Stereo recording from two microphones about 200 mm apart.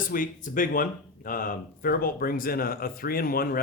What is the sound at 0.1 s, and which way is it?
Speech, 40° left (ahead or behind).